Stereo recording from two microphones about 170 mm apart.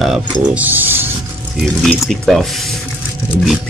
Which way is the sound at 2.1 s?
Centre (ahead or behind).